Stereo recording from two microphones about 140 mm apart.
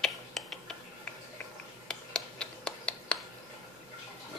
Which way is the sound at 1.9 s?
5° left (ahead or behind).